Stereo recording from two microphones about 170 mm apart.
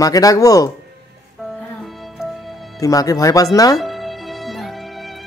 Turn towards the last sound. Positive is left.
turn(degrees=0)  # may be behind; listen again after turning